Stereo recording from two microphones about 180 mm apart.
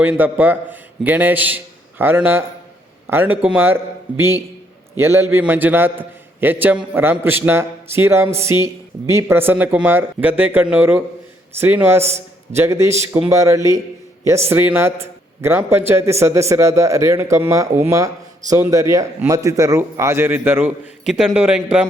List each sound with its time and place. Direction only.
0.0 s a man's voice: 10° right (ahead or behind)